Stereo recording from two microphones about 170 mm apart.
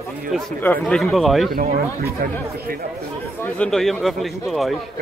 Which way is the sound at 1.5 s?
60° right (ahead or behind).